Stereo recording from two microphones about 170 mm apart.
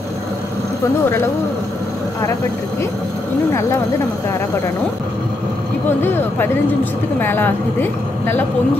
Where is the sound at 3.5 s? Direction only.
15° left (ahead or behind).